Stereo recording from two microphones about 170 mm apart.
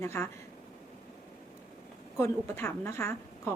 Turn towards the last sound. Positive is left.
turn(degrees=15)  # may be behind; listen again after turning